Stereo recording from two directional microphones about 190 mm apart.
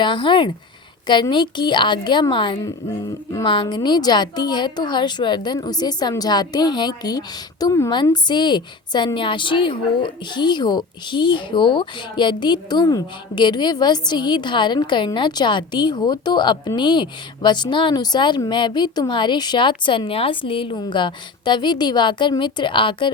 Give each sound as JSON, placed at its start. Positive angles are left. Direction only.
{"t": 0.0, "sound": "a woman's voice", "side_deg": 25}